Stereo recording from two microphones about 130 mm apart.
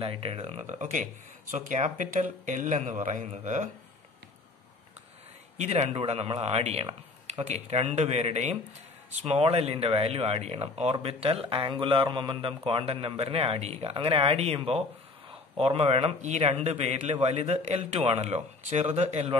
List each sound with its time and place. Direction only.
0.0 s speech: 50° right (ahead or behind)
5.6 s a man's voice: 55° right (ahead or behind)